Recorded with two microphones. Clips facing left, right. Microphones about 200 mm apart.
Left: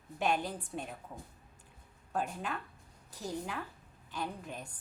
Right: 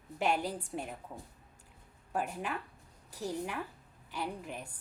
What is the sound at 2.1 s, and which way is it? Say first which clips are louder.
A woman's voice: right 1 dB; 10° right (ahead or behind).